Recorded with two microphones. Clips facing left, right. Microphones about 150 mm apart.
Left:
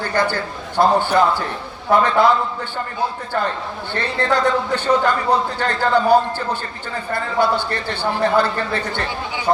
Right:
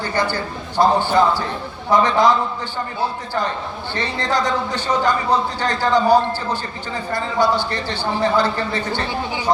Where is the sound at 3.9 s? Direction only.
60° left (ahead or behind).